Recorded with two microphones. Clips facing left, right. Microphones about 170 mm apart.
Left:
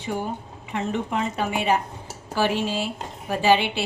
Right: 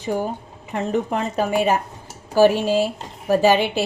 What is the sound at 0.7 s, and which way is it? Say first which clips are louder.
A woman's voice: right 4 dB; 40° right (ahead or behind).